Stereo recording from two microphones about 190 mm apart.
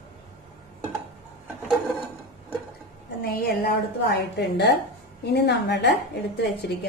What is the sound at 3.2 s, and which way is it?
A woman's voice, 50° left (ahead or behind).